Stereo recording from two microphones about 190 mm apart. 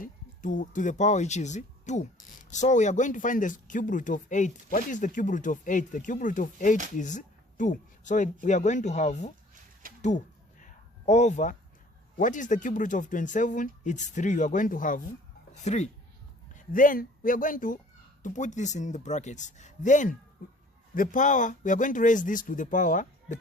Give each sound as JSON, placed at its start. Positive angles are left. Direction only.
{"t": 0.0, "sound": "speech", "side_deg": 45}
{"t": 10.0, "sound": "a sound", "side_deg": 40}
{"t": 12.1, "sound": "speech", "side_deg": 40}